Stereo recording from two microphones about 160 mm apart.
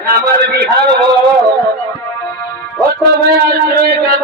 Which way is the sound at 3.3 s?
70° right (ahead or behind).